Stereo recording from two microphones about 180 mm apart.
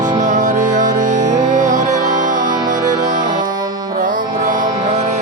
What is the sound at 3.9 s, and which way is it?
Music, 45° right (ahead or behind).